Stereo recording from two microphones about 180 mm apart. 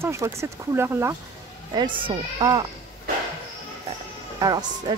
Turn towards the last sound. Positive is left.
turn(degrees=-20)  # may be behind; listen again after turning